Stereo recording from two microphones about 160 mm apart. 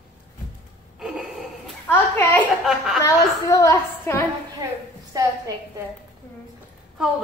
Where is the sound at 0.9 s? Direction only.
5° right (ahead or behind).